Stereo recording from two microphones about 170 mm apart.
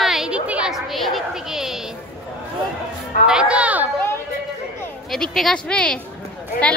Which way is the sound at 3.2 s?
5° right (ahead or behind).